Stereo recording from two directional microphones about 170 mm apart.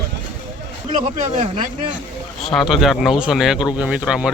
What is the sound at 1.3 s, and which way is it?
Speech, 40° right (ahead or behind).